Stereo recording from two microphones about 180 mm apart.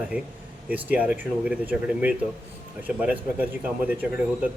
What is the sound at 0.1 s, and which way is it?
Speech, 10° right (ahead or behind).